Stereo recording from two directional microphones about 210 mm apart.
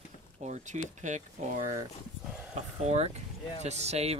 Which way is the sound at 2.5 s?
30° right (ahead or behind).